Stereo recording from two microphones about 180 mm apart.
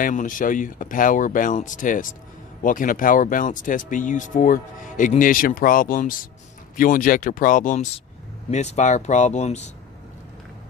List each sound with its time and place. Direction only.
0.0 s speech: 45° left (ahead or behind)